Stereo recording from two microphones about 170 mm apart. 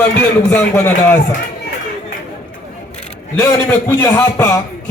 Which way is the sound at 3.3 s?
15° left (ahead or behind).